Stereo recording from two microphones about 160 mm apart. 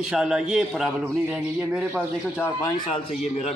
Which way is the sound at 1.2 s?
10° right (ahead or behind).